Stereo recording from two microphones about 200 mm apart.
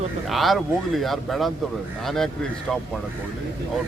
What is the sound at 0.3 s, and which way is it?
A man's voice, centre (ahead or behind).